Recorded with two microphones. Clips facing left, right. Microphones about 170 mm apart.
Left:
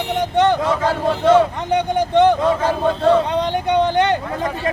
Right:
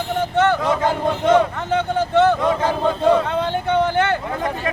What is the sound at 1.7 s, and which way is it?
Speech, 15° left (ahead or behind).